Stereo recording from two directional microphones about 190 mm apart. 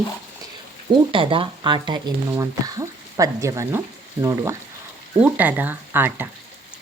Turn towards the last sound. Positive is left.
turn(degrees=-10)  # may be behind; listen again after turning